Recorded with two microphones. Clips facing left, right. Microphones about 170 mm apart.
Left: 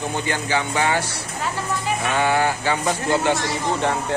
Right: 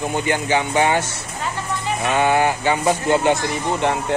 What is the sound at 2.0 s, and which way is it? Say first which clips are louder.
Speech: right 3 dB; 20° right (ahead or behind).